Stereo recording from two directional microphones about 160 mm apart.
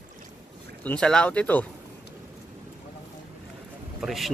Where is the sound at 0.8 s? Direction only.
5° left (ahead or behind).